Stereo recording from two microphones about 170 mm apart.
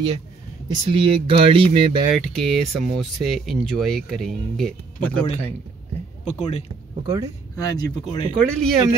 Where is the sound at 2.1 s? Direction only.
Centre (ahead or behind).